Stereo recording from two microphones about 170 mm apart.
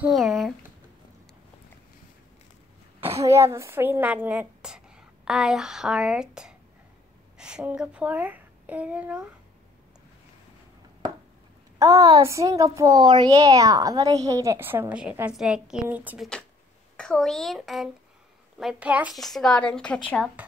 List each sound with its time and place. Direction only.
0.0 s speech: centre (ahead or behind)
3.2 s a woman's voice: 15° right (ahead or behind)
11.8 s a woman's voice: 20° right (ahead or behind)
16.9 s a child's voice: 5° left (ahead or behind)